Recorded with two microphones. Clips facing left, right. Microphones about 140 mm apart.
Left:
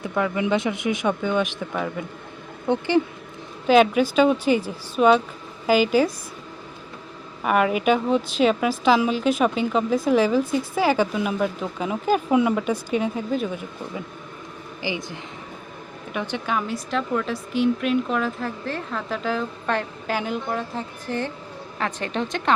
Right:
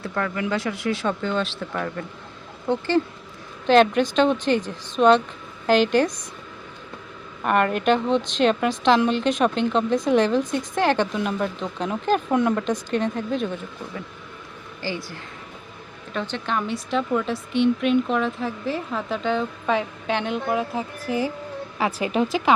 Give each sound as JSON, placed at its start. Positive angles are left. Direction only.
{"t": 0.0, "sound": "a woman's voice", "side_deg": 15}
{"t": 7.4, "sound": "a woman's voice", "side_deg": 5}
{"t": 14.8, "sound": "a woman's voice", "side_deg": 15}